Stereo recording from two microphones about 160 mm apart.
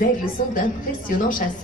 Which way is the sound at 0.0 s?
60° left (ahead or behind).